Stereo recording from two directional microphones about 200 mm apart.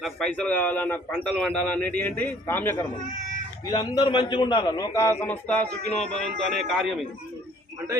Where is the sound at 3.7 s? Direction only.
20° left (ahead or behind); by 6.3 s 5° left (ahead or behind).